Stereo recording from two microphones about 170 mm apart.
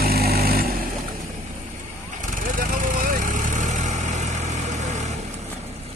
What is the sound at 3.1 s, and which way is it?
Vehicle, 50° right (ahead or behind).